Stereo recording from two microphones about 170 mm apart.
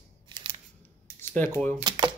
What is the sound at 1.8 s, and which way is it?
Speech, 25° right (ahead or behind).